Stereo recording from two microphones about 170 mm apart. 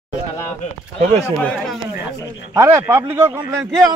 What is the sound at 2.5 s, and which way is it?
A man's voice, 15° right (ahead or behind).